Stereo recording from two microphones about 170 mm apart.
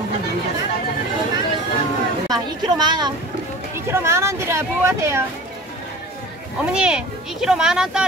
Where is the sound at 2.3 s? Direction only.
25° right (ahead or behind).